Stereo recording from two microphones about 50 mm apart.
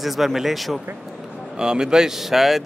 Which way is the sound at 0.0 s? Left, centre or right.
Centre.